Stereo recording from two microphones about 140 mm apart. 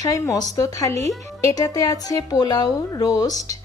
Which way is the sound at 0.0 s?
25° left (ahead or behind).